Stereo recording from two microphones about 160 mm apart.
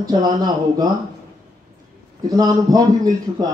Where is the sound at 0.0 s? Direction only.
25° right (ahead or behind).